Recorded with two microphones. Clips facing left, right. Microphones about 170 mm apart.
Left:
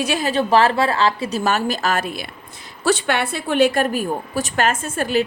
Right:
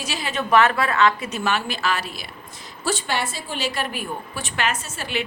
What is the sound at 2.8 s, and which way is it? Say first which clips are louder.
A woman's voice: left 6 dB; 65° left (ahead or behind).